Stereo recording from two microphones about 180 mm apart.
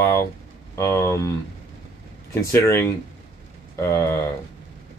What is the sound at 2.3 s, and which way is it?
Speech, 15° left (ahead or behind).